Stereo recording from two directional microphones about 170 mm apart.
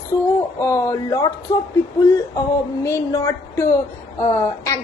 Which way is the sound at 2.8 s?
15° left (ahead or behind).